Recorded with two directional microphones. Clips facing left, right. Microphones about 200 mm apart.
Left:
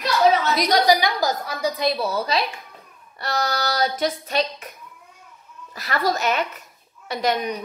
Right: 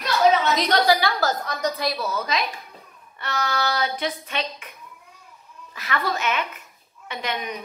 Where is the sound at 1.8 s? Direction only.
30° left (ahead or behind).